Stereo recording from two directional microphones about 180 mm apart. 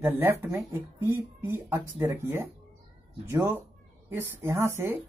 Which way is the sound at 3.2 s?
10° right (ahead or behind).